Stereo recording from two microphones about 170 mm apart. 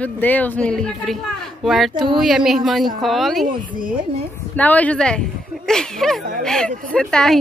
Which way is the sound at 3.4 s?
55° right (ahead or behind).